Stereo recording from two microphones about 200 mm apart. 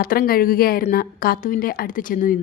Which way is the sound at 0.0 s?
50° left (ahead or behind).